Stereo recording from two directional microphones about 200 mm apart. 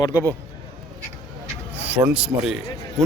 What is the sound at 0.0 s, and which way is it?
Speech, 20° left (ahead or behind).